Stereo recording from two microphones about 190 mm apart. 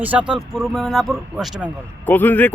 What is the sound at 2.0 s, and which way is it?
Speech, 10° left (ahead or behind).